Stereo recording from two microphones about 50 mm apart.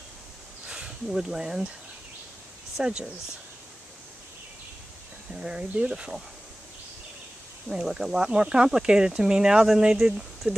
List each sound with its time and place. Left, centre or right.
0.7 s speech: centre
2.8 s speech: right
5.3 s speech: centre
7.6 s speech: centre
10.4 s speech: right